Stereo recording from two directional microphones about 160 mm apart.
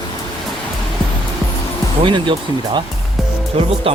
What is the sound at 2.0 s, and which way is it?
Speech, 30° right (ahead or behind).